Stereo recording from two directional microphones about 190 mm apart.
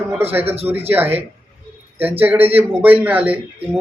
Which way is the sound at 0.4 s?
30° right (ahead or behind).